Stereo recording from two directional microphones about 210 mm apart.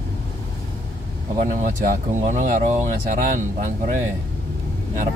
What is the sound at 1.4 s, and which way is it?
Speech, 40° right (ahead or behind).